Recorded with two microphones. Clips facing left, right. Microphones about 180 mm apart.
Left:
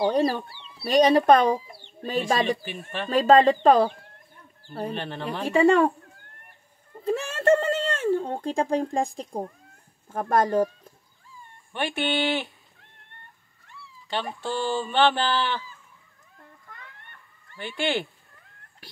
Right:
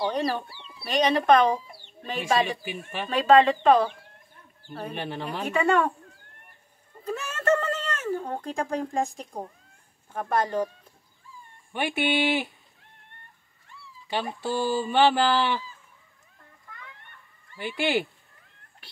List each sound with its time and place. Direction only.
0.0 s speech: 35° left (ahead or behind)
2.6 s speech: 10° right (ahead or behind)
3.1 s speech: 40° left (ahead or behind)
4.9 s speech: 10° right (ahead or behind)
5.4 s speech: 30° left (ahead or behind)
7.1 s a sound: 30° left (ahead or behind)
10.1 s speech: 45° left (ahead or behind)
11.7 s speech: 10° right (ahead or behind)
14.0 s speech: 10° right (ahead or behind)
17.6 s speech: 10° right (ahead or behind)